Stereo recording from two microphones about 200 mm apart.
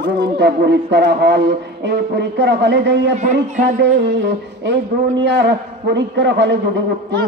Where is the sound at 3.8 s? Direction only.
60° right (ahead or behind).